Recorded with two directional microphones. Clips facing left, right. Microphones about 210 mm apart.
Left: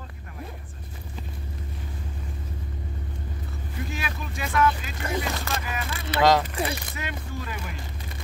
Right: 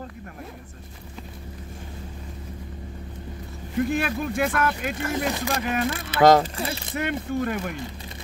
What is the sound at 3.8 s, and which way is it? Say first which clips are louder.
Speech: right 9 dB; 55° right (ahead or behind).